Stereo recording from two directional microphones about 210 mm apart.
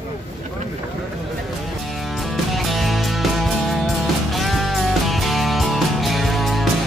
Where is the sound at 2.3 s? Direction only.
Centre (ahead or behind).